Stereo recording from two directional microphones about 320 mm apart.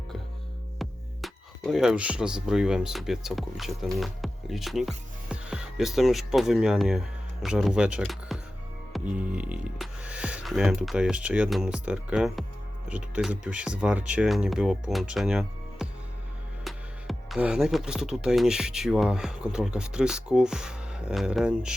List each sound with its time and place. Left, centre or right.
0.8 s speech: centre